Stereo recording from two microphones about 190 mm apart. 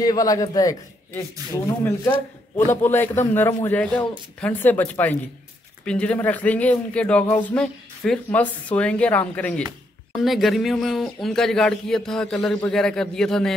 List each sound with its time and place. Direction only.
0.0 s a man's voice: 20° left (ahead or behind); by 13.6 s 5° left (ahead or behind)